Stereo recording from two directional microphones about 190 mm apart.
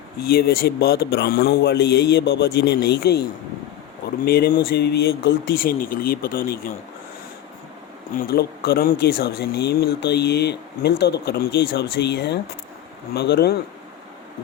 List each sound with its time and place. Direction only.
0.2 s speech: 55° left (ahead or behind)
4.3 s speech: 55° left (ahead or behind)
8.1 s speech: 55° left (ahead or behind)